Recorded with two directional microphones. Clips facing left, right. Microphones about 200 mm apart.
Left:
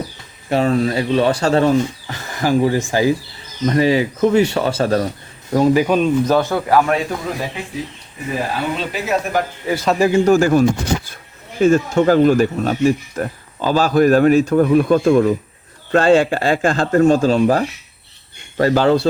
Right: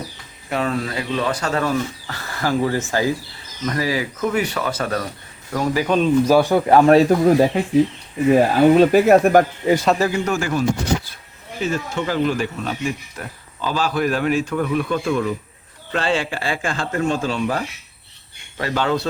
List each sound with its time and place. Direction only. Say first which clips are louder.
0.5 s speech: left 6 dB; 30° left (ahead or behind)
1.7 s speech: left 6 dB; 20° left (ahead or behind)
6.2 s speech: right 2 dB; 10° right (ahead or behind)
6.7 s speech: right 6 dB; 35° right (ahead or behind); by 9.4 s 55° right (ahead or behind)
10.0 s speech: left 8 dB; 25° left (ahead or behind)